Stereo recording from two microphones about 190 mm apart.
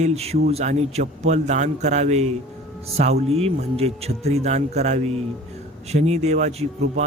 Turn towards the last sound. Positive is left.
turn(degrees=-35)  # may be behind; listen again after turning